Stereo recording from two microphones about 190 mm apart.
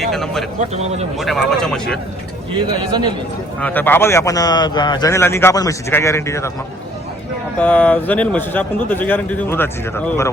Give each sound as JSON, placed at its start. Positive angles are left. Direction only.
{"t": 0.0, "sound": "speech", "side_deg": 0}
{"t": 0.7, "sound": "speech", "side_deg": -35}
{"t": 1.2, "sound": "speech", "side_deg": 0}
{"t": 2.6, "sound": "a man's voice", "side_deg": -25}
{"t": 3.6, "sound": "a man's voice", "side_deg": 10}
{"t": 7.6, "sound": "a man's voice", "side_deg": 5}